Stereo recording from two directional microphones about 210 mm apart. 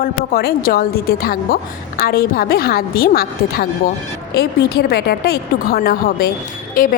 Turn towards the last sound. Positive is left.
turn(degrees=40)  # may be behind; listen again after turning